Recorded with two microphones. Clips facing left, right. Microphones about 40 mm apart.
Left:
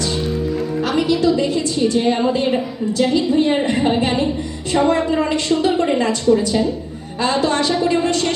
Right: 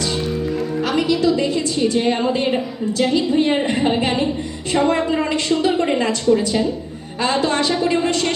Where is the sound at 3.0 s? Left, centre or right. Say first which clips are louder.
Left 1 dB; right.